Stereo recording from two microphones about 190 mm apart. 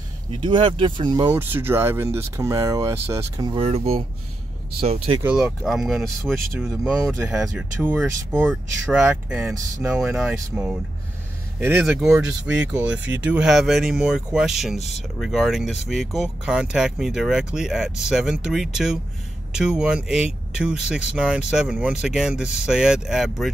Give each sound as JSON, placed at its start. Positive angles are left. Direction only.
{"t": 0.4, "sound": "speech", "side_deg": -25}
{"t": 1.3, "sound": "speech", "side_deg": -10}
{"t": 5.2, "sound": "speech", "side_deg": -5}
{"t": 12.0, "sound": "speech", "side_deg": -5}
{"t": 14.8, "sound": "speech", "side_deg": 35}
{"t": 15.1, "sound": "speech", "side_deg": 0}